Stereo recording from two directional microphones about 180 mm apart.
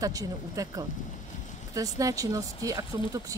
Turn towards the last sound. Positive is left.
turn(degrees=-20)  # may be behind; listen again after turning